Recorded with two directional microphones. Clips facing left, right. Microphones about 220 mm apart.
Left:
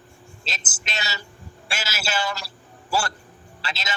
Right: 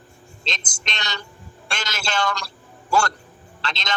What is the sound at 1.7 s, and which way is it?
Bird, 5° left (ahead or behind).